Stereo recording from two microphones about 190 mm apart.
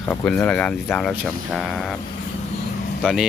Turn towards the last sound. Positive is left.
turn(degrees=0)  # may be behind; listen again after turning